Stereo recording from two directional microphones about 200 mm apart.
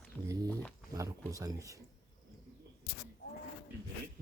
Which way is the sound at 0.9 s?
15° right (ahead or behind).